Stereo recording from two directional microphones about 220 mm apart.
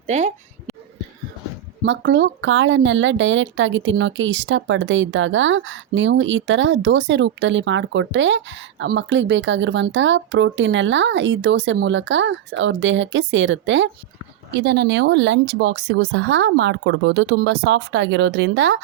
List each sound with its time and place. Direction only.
0.1 s speech: 30° right (ahead or behind)
1.8 s a woman's voice: 55° right (ahead or behind)